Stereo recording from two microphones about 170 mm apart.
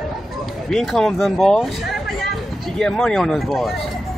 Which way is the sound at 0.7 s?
Centre (ahead or behind).